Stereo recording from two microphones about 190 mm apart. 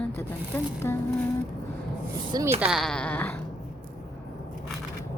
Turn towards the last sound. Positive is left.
turn(degrees=10)  # may be behind; listen again after turning